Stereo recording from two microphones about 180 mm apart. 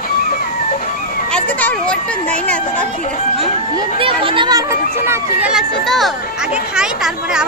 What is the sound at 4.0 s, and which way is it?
Speech, 30° right (ahead or behind).